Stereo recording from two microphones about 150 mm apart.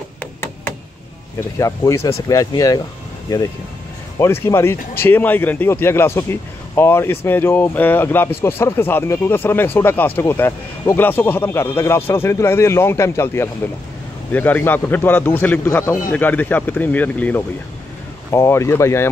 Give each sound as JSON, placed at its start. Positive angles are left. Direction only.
{"t": 0.2, "sound": "a sound", "side_deg": 15}
{"t": 1.6, "sound": "speech", "side_deg": 20}
{"t": 4.2, "sound": "speech", "side_deg": 20}